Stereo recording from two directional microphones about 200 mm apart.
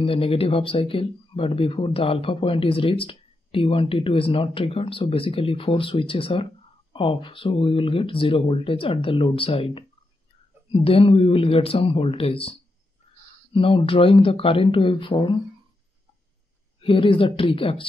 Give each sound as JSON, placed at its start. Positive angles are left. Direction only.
{"t": 0.0, "sound": "speech", "side_deg": 30}
{"t": 16.8, "sound": "speech", "side_deg": 25}